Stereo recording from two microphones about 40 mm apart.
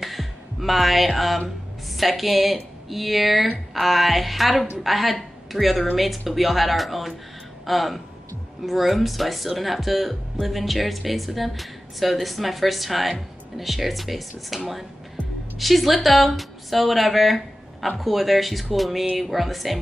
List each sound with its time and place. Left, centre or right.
0.0 s music: centre
2.0 s a woman's voice: centre